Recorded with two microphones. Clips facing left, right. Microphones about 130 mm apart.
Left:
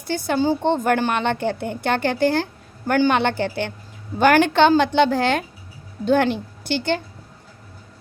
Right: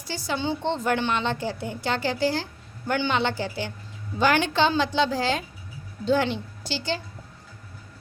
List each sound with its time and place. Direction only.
0.1 s a woman's voice: 55° left (ahead or behind)